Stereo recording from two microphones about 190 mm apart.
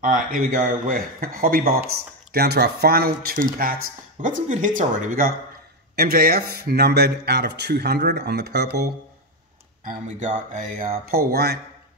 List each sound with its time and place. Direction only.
0.0 s speech: 45° right (ahead or behind)
9.8 s speech: 40° right (ahead or behind); by 11.6 s 55° right (ahead or behind)